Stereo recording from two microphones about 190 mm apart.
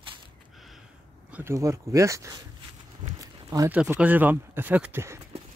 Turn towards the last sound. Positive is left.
turn(degrees=-15)  # may be behind; listen again after turning